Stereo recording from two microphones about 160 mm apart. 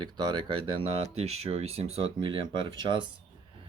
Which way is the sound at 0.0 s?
30° right (ahead or behind).